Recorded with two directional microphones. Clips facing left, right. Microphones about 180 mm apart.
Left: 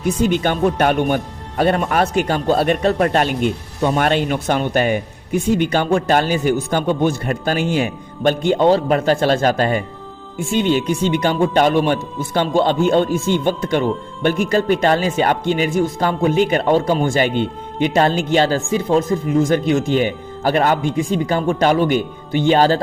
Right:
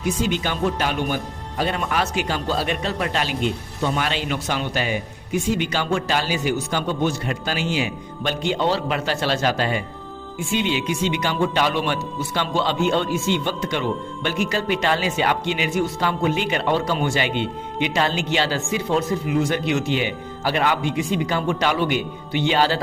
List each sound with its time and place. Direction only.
0.0 s speech: 50° left (ahead or behind)